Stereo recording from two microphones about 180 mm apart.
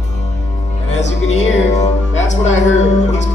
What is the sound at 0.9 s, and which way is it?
Speech, 40° left (ahead or behind).